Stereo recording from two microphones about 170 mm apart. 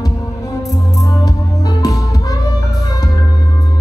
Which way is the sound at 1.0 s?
20° left (ahead or behind).